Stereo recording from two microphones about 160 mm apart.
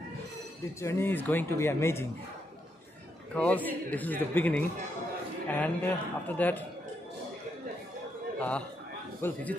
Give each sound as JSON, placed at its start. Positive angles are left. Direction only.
{"t": 0.7, "sound": "speech", "side_deg": 15}
{"t": 3.3, "sound": "speech", "side_deg": 10}
{"t": 8.4, "sound": "a man's voice", "side_deg": 10}